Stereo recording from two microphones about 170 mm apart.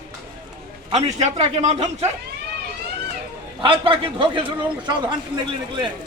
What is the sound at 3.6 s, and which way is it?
Speech, 30° right (ahead or behind).